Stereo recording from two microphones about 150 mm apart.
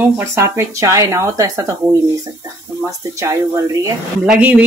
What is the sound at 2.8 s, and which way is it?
Speech, 20° right (ahead or behind).